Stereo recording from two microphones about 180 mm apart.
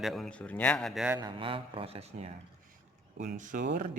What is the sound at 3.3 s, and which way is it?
Speech, 45° right (ahead or behind).